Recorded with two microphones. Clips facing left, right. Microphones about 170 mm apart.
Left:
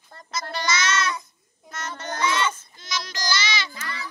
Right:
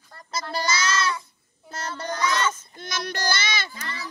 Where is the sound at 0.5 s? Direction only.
30° right (ahead or behind).